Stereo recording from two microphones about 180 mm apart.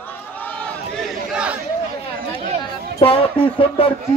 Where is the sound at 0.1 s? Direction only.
10° left (ahead or behind).